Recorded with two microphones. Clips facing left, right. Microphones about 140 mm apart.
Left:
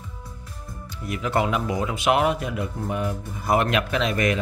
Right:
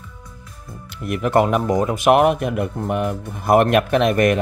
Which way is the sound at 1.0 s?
55° right (ahead or behind).